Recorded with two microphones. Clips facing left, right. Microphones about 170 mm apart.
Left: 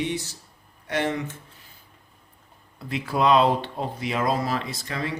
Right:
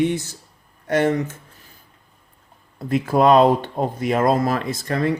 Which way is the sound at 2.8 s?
45° right (ahead or behind).